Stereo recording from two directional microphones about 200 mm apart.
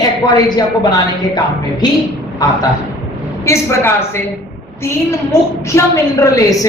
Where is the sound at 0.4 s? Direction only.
20° left (ahead or behind).